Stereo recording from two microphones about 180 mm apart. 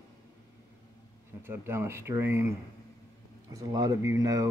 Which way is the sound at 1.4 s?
15° right (ahead or behind).